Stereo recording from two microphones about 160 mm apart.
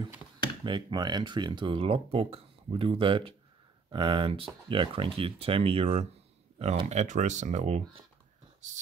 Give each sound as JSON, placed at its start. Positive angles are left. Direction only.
{"t": 0.7, "sound": "speech", "side_deg": -30}